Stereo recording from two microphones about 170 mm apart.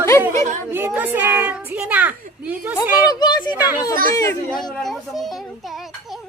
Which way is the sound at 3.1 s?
25° left (ahead or behind).